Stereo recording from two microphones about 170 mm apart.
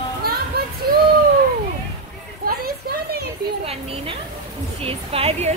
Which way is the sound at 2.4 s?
65° right (ahead or behind).